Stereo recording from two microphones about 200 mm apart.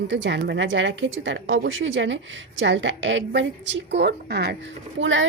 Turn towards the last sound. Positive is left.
turn(degrees=-70)  # may be behind; listen again after turning